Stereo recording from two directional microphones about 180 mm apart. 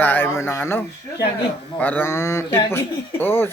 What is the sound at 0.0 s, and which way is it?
Speech, 10° left (ahead or behind).